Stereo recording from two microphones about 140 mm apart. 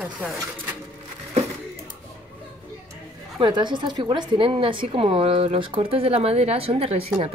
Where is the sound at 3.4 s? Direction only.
35° right (ahead or behind).